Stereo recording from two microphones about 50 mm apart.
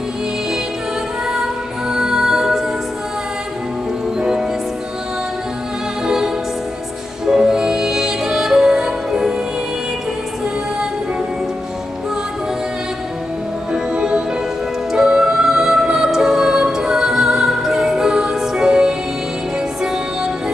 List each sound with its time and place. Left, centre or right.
1.2 s music: centre
4.2 s music: centre
6.0 s music: centre
13.7 s music: centre